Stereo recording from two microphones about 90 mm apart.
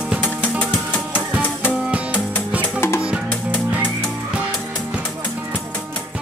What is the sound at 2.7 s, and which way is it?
Music, 30° left (ahead or behind).